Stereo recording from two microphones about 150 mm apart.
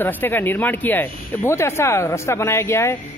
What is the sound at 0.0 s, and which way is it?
Speech, 15° left (ahead or behind).